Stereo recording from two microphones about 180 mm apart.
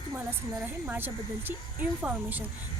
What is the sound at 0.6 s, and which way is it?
A woman's voice, 10° right (ahead or behind).